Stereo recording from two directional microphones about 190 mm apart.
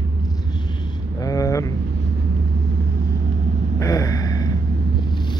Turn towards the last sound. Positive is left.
turn(degrees=20)  # may be behind; listen again after turning